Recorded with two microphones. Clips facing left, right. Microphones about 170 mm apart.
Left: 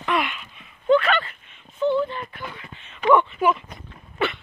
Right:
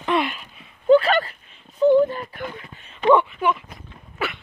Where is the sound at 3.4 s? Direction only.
10° left (ahead or behind).